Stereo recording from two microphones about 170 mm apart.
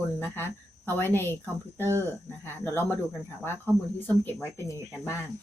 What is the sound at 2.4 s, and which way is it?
Speech, 15° left (ahead or behind).